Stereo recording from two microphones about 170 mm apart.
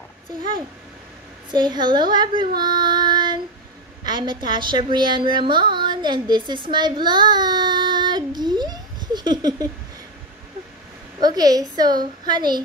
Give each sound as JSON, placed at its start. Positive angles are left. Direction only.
{"t": 1.5, "sound": "a woman's voice", "side_deg": -25}
{"t": 11.1, "sound": "speech", "side_deg": -20}